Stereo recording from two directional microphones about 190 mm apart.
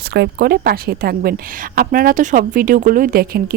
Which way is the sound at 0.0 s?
55° right (ahead or behind).